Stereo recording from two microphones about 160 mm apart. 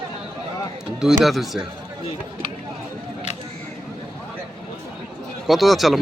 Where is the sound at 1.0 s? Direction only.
Centre (ahead or behind).